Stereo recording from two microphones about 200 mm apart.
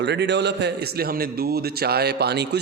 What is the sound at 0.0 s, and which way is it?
A man's voice, 60° right (ahead or behind).